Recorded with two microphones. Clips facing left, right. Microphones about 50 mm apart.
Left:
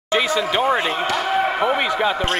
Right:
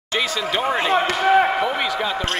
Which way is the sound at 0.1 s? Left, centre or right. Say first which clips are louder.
Left 3 dB; centre.